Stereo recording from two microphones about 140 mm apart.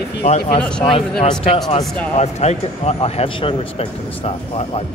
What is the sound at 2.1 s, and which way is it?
A man's voice, 50° left (ahead or behind).